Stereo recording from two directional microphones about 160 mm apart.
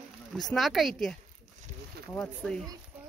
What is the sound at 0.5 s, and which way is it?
Speech, centre (ahead or behind).